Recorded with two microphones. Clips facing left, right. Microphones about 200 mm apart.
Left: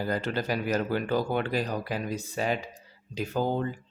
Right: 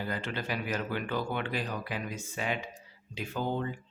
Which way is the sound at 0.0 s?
40° left (ahead or behind).